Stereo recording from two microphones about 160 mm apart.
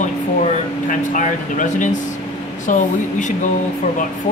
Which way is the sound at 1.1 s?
55° left (ahead or behind).